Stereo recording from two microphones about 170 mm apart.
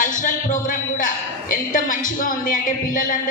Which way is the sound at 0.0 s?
50° left (ahead or behind).